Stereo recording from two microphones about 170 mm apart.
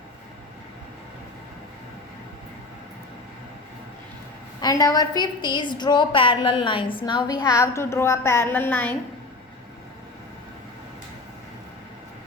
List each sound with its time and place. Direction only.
4.6 s a woman's voice: 20° left (ahead or behind)